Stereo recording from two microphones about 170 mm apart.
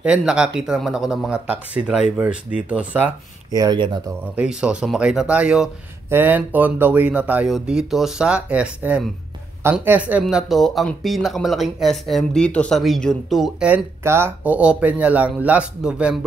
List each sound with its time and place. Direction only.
0.0 s speech: 5° right (ahead or behind)
3.5 s speech: 25° right (ahead or behind)
4.4 s speech: 5° right (ahead or behind)
14.0 s speech: 15° right (ahead or behind)